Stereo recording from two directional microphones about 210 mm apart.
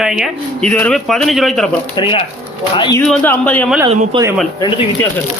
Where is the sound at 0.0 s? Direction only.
Centre (ahead or behind).